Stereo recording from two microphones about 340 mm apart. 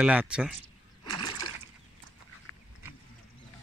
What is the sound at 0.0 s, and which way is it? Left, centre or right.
Speech, centre.